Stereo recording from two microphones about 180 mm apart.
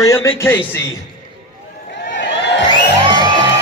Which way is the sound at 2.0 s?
80° left.